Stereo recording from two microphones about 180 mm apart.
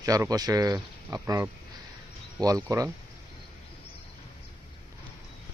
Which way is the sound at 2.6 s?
20° right (ahead or behind).